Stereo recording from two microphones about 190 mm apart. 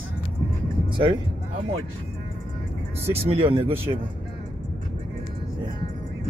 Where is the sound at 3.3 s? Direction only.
30° right (ahead or behind).